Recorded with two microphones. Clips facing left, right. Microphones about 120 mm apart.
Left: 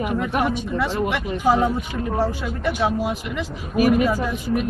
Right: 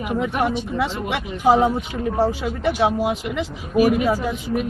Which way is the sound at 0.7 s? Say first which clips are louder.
Left 1 dB; 15° right (ahead or behind).